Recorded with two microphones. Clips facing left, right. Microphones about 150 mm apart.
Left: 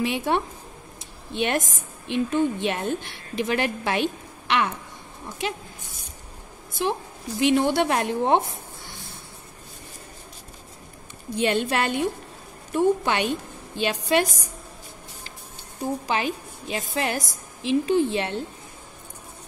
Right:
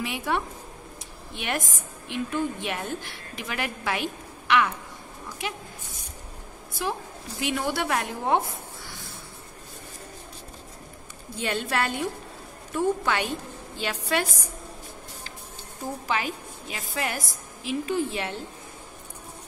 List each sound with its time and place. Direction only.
0.0 s a woman's voice: 25° left (ahead or behind)
6.8 s a woman's voice: 25° left (ahead or behind)
11.3 s a woman's voice: 20° left (ahead or behind)
15.8 s a woman's voice: 20° left (ahead or behind)